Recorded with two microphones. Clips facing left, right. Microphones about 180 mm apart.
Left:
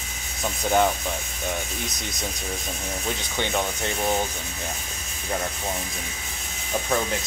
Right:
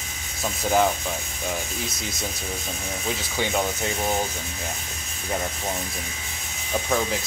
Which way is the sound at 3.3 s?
5° right (ahead or behind).